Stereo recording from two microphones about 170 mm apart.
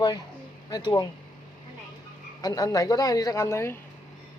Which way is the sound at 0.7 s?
25° left (ahead or behind).